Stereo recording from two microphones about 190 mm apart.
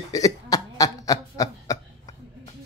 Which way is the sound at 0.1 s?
20° left (ahead or behind).